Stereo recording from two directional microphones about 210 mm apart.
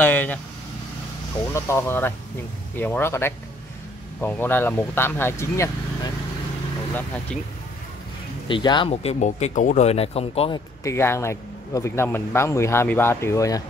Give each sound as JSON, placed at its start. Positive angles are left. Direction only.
{"t": 0.0, "sound": "vehicle", "side_deg": 10}
{"t": 1.5, "sound": "speech", "side_deg": 10}
{"t": 8.5, "sound": "speech", "side_deg": 20}
{"t": 10.8, "sound": "speech", "side_deg": 15}